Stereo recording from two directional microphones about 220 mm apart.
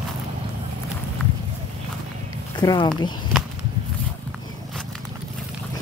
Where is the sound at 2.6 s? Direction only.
20° left (ahead or behind).